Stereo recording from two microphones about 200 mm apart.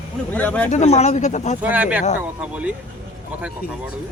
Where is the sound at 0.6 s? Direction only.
35° left (ahead or behind).